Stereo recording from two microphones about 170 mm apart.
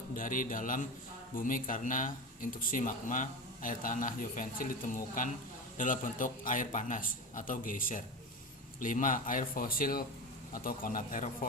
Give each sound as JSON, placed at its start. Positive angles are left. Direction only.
{"t": 0.1, "sound": "speech", "side_deg": 50}